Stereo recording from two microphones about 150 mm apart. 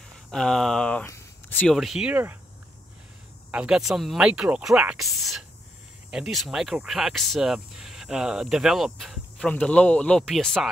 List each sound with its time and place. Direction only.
0.3 s speech: 5° left (ahead or behind)
1.0 s a sound: 15° left (ahead or behind)
1.7 s speech: centre (ahead or behind)
3.5 s speech: 5° right (ahead or behind)